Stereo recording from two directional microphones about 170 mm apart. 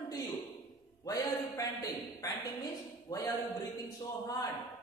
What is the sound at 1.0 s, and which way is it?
A man's voice, 20° left (ahead or behind).